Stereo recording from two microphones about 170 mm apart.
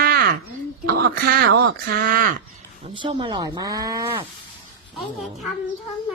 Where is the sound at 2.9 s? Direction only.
30° right (ahead or behind).